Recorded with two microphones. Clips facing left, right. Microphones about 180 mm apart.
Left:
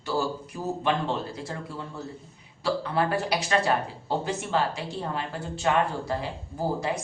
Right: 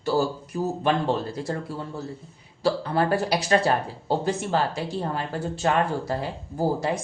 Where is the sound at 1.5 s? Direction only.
40° right (ahead or behind).